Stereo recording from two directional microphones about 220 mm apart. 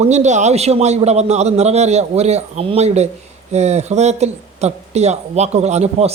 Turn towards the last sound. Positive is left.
turn(degrees=-30)  # may be behind; listen again after turning